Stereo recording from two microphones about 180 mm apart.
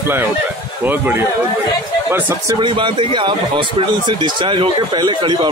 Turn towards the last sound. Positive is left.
turn(degrees=-25)  # may be behind; listen again after turning